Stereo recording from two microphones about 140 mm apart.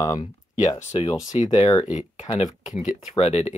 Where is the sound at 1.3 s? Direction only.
50° left (ahead or behind).